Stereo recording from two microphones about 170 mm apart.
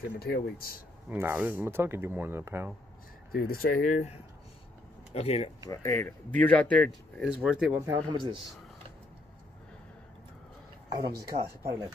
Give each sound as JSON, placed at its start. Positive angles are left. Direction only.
{"t": 0.2, "sound": "speech", "side_deg": 65}
{"t": 1.0, "sound": "speech", "side_deg": -10}
{"t": 3.3, "sound": "speech", "side_deg": 60}
{"t": 5.1, "sound": "speech", "side_deg": 35}
{"t": 5.7, "sound": "speech", "side_deg": 15}
{"t": 8.1, "sound": "a man's voice", "side_deg": -25}
{"t": 11.1, "sound": "speech", "side_deg": -15}